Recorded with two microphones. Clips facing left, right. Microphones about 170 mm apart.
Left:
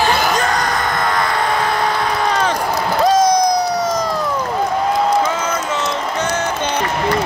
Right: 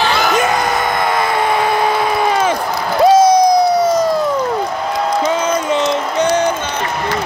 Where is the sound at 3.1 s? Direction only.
10° right (ahead or behind).